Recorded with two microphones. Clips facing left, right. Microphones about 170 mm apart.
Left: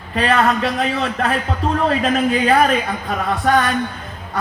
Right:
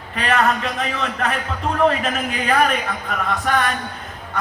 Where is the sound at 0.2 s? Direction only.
35° left (ahead or behind).